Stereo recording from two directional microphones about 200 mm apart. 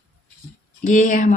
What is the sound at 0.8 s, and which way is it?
Speech, 40° left (ahead or behind).